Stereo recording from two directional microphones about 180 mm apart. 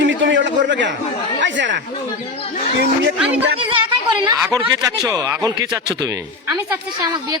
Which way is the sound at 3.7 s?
25° right (ahead or behind).